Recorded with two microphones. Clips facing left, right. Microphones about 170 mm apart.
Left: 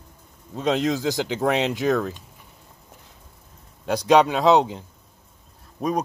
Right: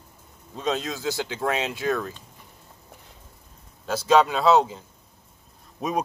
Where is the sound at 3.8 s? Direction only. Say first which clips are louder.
Left 2 dB; 15° left (ahead or behind).